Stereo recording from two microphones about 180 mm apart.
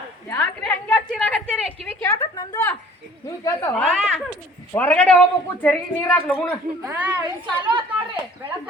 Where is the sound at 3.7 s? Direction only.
5° left (ahead or behind).